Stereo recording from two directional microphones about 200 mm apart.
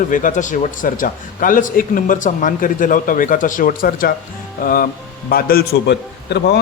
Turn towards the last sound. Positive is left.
turn(degrees=55)  # may be behind; listen again after turning